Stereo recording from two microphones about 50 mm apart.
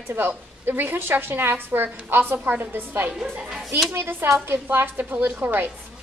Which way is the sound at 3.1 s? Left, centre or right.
Centre.